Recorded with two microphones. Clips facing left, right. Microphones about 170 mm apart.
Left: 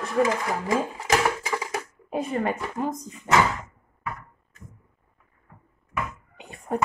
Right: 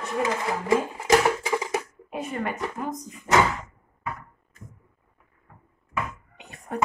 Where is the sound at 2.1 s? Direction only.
35° left (ahead or behind).